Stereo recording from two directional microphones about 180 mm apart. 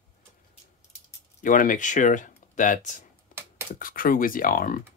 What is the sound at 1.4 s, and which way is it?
Speech, 45° left (ahead or behind).